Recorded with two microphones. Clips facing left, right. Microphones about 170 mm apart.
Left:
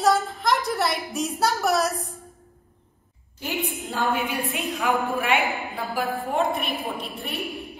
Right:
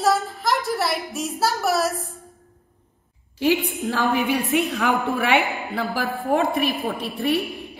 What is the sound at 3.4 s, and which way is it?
A woman's voice, 85° right.